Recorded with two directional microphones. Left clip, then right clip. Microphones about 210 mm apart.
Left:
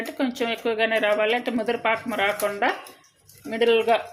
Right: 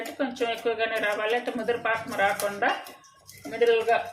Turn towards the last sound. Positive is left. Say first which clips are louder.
# left 2 dB
turn(degrees=40)  # may be behind; listen again after turning